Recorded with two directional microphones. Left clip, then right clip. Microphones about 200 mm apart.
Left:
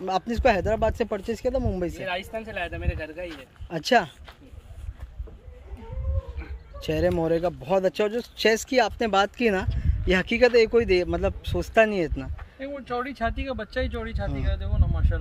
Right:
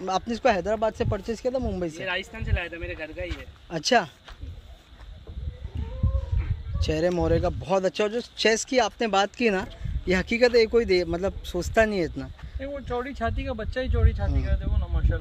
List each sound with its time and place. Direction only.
0.0 s speech: centre (ahead or behind)
2.0 s speech: 45° left (ahead or behind)
3.6 s speech: centre (ahead or behind)
6.8 s speech: centre (ahead or behind)
14.2 s speech: 15° left (ahead or behind)